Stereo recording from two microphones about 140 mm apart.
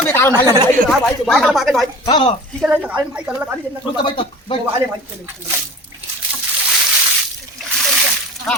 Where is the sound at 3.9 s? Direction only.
35° left (ahead or behind).